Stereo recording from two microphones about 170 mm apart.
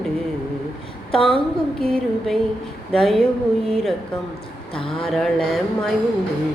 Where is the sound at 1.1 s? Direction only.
30° left (ahead or behind).